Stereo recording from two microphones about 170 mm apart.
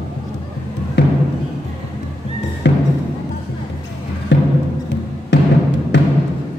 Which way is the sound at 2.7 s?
90° left.